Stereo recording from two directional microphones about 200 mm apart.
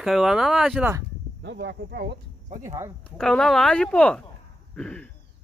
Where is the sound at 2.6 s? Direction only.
15° right (ahead or behind).